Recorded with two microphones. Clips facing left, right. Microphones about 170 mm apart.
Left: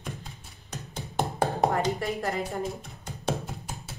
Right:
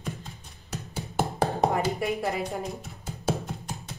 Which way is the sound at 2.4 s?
Centre (ahead or behind).